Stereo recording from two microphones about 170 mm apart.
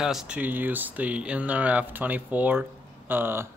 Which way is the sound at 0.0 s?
5° right (ahead or behind).